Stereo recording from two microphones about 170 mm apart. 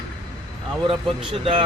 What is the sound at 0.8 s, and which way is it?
Speech, 35° right (ahead or behind).